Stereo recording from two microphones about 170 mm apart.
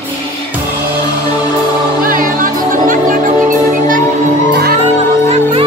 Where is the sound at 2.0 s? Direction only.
55° right (ahead or behind).